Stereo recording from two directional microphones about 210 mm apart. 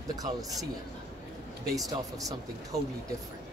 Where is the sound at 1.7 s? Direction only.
15° right (ahead or behind).